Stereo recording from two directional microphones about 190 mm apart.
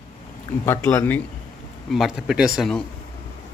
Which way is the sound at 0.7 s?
10° left (ahead or behind).